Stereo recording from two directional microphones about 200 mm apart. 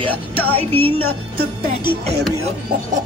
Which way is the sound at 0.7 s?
90° right.